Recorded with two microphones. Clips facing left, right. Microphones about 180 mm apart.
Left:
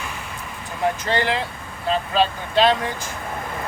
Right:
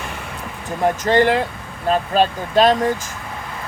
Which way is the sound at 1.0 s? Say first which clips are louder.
Right 7 dB; 45° right (ahead or behind).